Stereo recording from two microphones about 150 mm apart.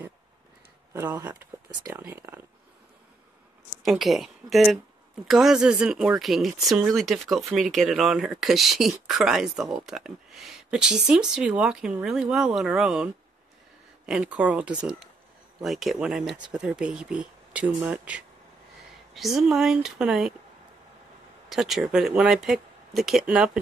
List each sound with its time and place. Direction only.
1.2 s speech: 15° right (ahead or behind)
3.8 s speech: centre (ahead or behind)
21.5 s speech: centre (ahead or behind)